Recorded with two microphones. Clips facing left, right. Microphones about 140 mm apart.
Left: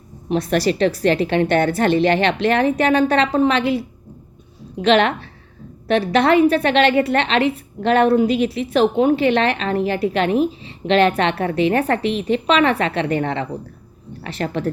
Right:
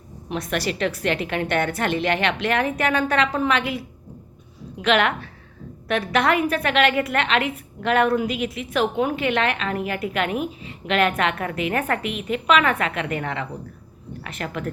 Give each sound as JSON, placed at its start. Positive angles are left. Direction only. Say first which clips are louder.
{"t": 0.3, "sound": "a woman's voice", "louder": "left 8 dB", "side_deg": 30}